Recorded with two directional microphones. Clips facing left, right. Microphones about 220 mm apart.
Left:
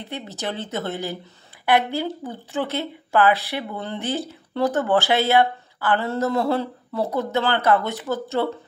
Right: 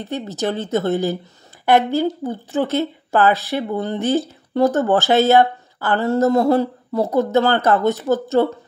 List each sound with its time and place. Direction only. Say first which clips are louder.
0.0 s speech: right 7 dB; 45° right (ahead or behind)